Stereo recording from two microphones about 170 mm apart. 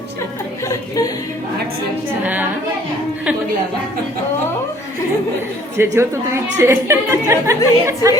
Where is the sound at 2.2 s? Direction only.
10° right (ahead or behind).